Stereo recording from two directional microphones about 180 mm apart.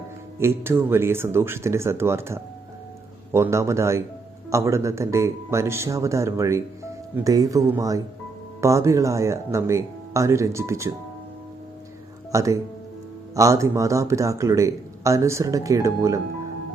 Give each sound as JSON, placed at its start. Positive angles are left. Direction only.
{"t": 0.3, "sound": "speech", "side_deg": -15}
{"t": 12.3, "sound": "speech", "side_deg": -15}